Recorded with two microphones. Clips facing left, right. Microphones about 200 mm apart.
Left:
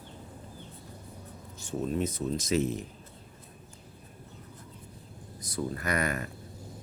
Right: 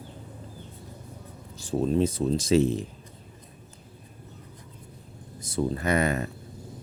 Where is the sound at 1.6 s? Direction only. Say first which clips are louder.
Right 7 dB; 35° right (ahead or behind).